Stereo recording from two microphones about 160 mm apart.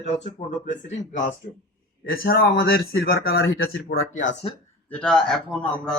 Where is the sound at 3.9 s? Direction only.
90° left.